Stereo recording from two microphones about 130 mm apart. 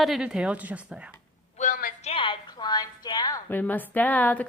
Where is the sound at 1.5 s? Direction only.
85° left.